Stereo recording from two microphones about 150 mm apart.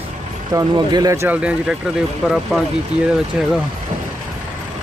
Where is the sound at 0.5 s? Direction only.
25° right (ahead or behind); by 2.6 s centre (ahead or behind).